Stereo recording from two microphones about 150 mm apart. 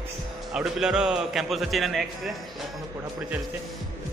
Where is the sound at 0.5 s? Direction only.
5° right (ahead or behind).